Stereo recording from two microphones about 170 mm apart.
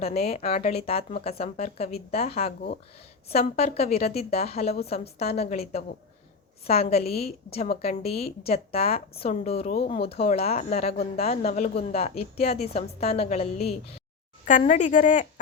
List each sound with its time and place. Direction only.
0.0 s a woman's voice: 35° left (ahead or behind)
14.6 s speech: 45° left (ahead or behind)